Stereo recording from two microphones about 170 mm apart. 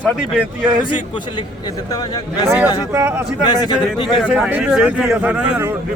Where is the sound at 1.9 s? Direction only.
20° left (ahead or behind).